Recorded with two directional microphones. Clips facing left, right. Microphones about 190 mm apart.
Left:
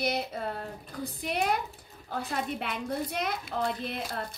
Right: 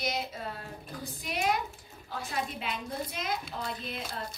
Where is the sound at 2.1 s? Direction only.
55° left (ahead or behind).